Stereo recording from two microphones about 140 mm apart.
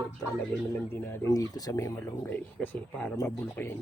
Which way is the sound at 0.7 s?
15° left (ahead or behind).